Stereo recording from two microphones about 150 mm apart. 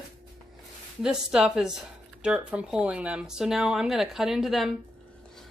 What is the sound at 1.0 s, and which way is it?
Speech, 5° right (ahead or behind).